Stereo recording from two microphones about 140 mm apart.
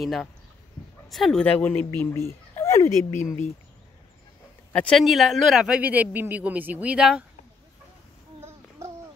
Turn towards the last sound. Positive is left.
turn(degrees=-5)  # may be behind; listen again after turning